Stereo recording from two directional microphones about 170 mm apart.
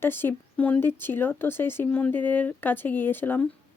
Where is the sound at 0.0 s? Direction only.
10° left (ahead or behind).